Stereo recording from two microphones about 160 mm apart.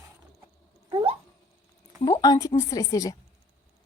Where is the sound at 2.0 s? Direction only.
25° left (ahead or behind).